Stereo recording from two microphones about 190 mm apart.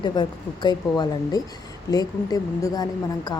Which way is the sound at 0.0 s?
25° left (ahead or behind).